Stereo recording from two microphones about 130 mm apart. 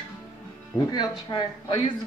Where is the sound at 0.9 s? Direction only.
35° left (ahead or behind).